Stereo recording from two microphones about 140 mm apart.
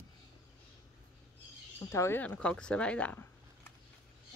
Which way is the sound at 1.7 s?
20° left (ahead or behind).